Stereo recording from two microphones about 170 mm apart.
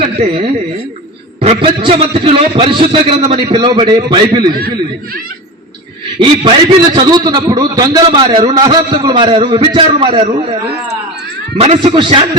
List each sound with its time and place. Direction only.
0.0 s a man's voice: 35° right (ahead or behind)
6.1 s a man's voice: 30° right (ahead or behind)
11.6 s a man's voice: 30° right (ahead or behind)